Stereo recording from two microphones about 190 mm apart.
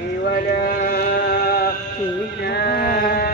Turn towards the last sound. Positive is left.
turn(degrees=55)  # may be behind; listen again after turning